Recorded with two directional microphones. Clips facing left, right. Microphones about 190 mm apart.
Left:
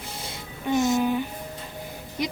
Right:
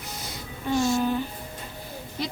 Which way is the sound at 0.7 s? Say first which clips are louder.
Left 1 dB; 20° left (ahead or behind).